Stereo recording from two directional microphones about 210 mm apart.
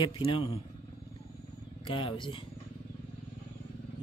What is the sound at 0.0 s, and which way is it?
Speech, 25° left (ahead or behind).